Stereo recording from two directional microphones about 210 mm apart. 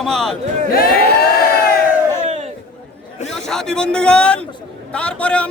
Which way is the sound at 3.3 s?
Centre (ahead or behind).